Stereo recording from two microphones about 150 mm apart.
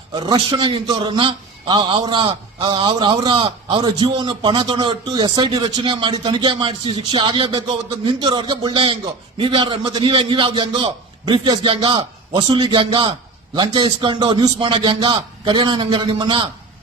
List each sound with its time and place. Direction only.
0.1 s a man's voice: 30° right (ahead or behind)